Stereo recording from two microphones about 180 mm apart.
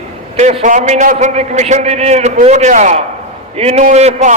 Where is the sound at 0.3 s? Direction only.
40° right (ahead or behind).